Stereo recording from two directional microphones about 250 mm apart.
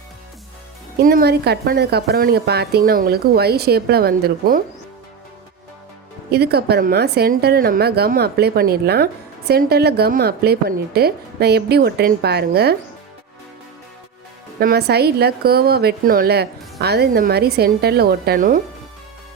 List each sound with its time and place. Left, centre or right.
0.9 s a woman's voice: right
6.3 s a woman's voice: right
14.6 s a woman's voice: right